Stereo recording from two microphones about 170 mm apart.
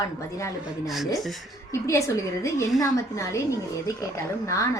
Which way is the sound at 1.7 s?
15° left (ahead or behind).